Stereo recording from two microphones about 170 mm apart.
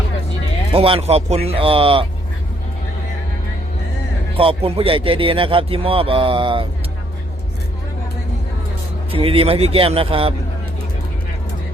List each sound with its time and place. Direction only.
0.7 s a man's voice: 35° right (ahead or behind)
4.4 s a man's voice: 35° right (ahead or behind)
9.1 s a man's voice: 35° right (ahead or behind)